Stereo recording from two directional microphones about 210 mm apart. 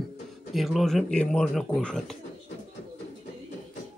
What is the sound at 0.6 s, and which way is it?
Speech, centre (ahead or behind).